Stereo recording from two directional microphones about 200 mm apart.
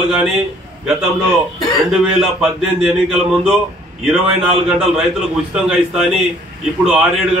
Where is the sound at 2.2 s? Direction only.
5° right (ahead or behind).